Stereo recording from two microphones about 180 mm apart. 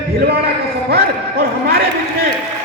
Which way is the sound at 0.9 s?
60° right (ahead or behind).